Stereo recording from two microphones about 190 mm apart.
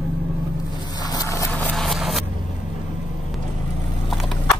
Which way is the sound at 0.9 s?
20° left (ahead or behind).